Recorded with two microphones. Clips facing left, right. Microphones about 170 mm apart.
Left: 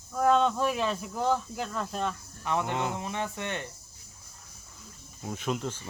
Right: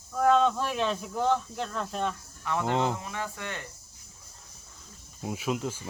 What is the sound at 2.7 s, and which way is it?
Speech, 30° right (ahead or behind).